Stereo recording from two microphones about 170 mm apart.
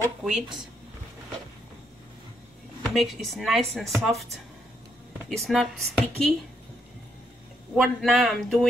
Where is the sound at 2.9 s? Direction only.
Centre (ahead or behind).